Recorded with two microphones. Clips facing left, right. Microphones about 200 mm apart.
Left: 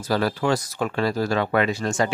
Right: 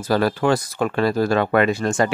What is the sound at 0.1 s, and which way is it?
Speech, 55° right (ahead or behind).